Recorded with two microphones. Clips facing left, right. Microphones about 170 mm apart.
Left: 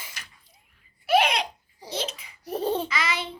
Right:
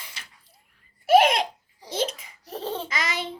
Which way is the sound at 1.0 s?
45° right (ahead or behind).